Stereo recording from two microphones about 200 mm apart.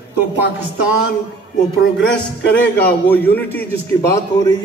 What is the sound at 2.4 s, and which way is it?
A man's voice, 10° left (ahead or behind).